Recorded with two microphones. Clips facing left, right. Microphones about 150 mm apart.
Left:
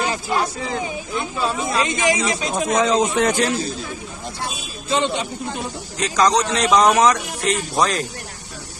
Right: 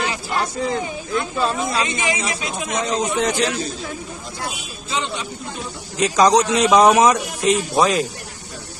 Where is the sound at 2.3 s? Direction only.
40° left (ahead or behind).